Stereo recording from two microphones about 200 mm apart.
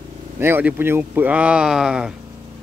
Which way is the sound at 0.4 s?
10° right (ahead or behind).